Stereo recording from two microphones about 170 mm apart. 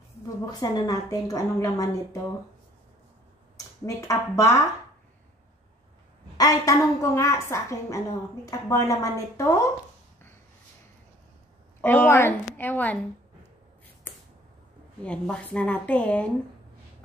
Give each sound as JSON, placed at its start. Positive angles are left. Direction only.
{"t": 0.5, "sound": "a woman's voice", "side_deg": 20}
{"t": 3.5, "sound": "speech", "side_deg": 20}
{"t": 6.3, "sound": "a woman's voice", "side_deg": 20}
{"t": 11.8, "sound": "a woman's voice", "side_deg": 10}
{"t": 14.1, "sound": "finger snapping", "side_deg": 10}
{"t": 15.0, "sound": "a woman's voice", "side_deg": 5}